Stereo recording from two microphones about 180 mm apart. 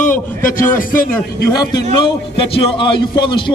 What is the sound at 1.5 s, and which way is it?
A man's voice, 25° left (ahead or behind).